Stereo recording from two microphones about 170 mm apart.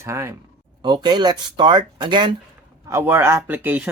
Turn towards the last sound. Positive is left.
turn(degrees=-10)  # may be behind; listen again after turning